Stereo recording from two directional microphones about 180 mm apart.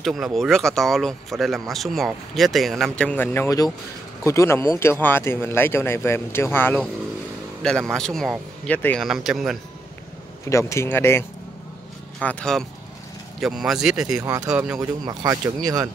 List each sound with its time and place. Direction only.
0.0 s speech: centre (ahead or behind)
10.5 s speech: 15° left (ahead or behind); by 14.2 s 5° right (ahead or behind)
14.2 s speech: 20° right (ahead or behind)
14.5 s speech: 5° right (ahead or behind)
14.8 s speech: 20° right (ahead or behind)